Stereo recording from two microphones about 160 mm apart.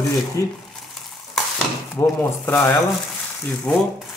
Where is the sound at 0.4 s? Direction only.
20° left (ahead or behind).